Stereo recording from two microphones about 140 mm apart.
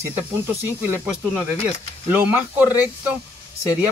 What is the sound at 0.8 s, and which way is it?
Speech, 15° right (ahead or behind).